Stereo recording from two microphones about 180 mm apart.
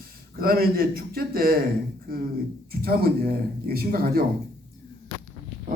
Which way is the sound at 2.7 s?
55° right (ahead or behind).